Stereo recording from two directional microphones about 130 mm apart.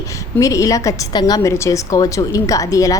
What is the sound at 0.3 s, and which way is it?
A woman's voice, 25° left (ahead or behind).